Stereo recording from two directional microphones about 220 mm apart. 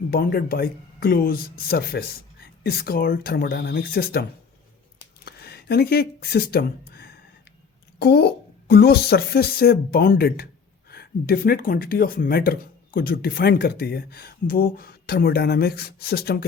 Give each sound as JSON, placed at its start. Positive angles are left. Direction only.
{"t": 0.1, "sound": "speech", "side_deg": 45}
{"t": 5.2, "sound": "a sound", "side_deg": 45}
{"t": 7.9, "sound": "speech", "side_deg": 45}